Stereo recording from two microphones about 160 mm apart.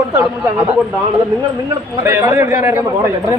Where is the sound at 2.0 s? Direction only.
20° right (ahead or behind).